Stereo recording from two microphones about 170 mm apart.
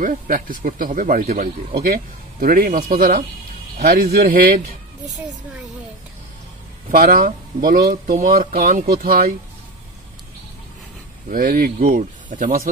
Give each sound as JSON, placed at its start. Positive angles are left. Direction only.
{"t": 0.0, "sound": "speech", "side_deg": -55}
{"t": 7.0, "sound": "speech", "side_deg": -60}
{"t": 11.2, "sound": "speech", "side_deg": -55}